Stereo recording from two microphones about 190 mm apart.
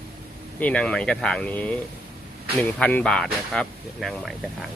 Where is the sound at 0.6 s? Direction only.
5° left (ahead or behind).